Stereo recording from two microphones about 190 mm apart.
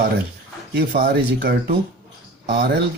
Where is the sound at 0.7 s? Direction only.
60° right (ahead or behind).